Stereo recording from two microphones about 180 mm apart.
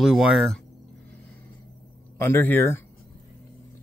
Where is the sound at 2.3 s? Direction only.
10° left (ahead or behind).